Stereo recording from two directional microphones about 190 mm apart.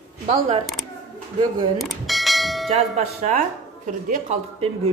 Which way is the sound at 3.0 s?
40° right (ahead or behind).